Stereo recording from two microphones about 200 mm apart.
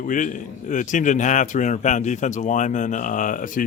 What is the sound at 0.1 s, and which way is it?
A man's voice, 40° left (ahead or behind).